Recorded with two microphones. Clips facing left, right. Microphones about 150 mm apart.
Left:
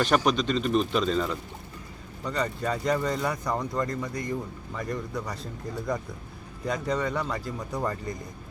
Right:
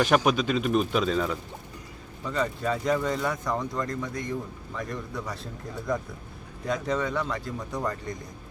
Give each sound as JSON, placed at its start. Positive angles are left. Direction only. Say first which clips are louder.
{"t": 0.0, "sound": "speech", "louder": "right 1 dB", "side_deg": -5}